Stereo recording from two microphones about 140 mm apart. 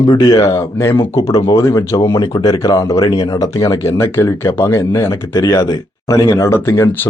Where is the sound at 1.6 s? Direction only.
20° left (ahead or behind).